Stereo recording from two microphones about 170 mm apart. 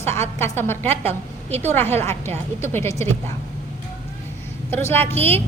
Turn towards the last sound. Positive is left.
turn(degrees=10)  # may be behind; listen again after turning